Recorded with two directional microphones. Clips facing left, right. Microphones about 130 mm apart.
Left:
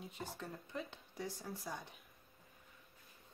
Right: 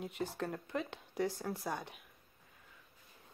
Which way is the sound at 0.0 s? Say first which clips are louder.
Right 8 dB; 75° right (ahead or behind).